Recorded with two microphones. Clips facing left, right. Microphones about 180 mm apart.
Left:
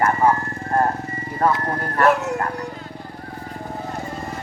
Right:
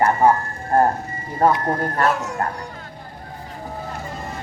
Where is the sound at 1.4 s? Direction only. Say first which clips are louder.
Right 3 dB; 25° right (ahead or behind).